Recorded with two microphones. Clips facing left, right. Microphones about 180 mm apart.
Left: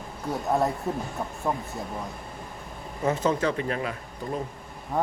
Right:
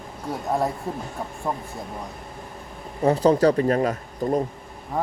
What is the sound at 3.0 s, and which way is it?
Speech, 35° right (ahead or behind).